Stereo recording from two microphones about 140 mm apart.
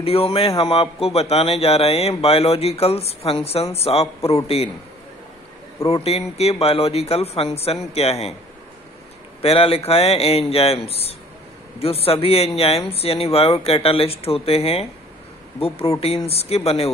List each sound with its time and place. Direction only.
0.0 s a man's voice: 45° left (ahead or behind)
5.9 s a man's voice: 45° left (ahead or behind)
9.4 s a man's voice: 45° left (ahead or behind)